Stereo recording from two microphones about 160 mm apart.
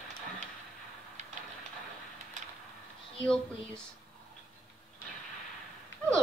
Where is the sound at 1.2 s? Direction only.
45° right (ahead or behind).